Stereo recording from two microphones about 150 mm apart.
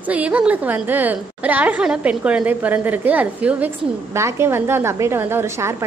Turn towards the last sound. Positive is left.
turn(degrees=-15)  # may be behind; listen again after turning